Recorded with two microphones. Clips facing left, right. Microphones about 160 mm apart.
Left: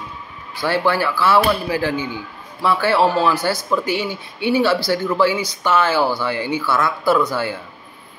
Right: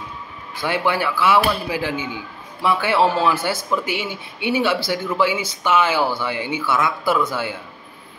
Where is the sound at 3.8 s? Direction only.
40° left (ahead or behind).